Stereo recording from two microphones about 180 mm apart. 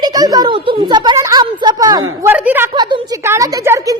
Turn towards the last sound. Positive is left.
turn(degrees=-15)  # may be behind; listen again after turning